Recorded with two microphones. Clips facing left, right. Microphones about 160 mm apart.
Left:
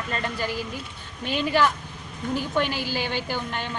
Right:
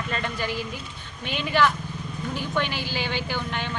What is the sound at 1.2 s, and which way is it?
A woman's voice, 40° left (ahead or behind).